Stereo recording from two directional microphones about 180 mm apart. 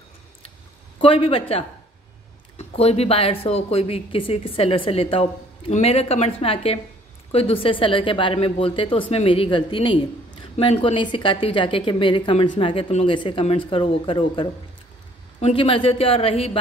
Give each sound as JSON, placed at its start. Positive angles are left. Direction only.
{"t": 0.9, "sound": "speech", "side_deg": 30}
{"t": 2.5, "sound": "speech", "side_deg": 35}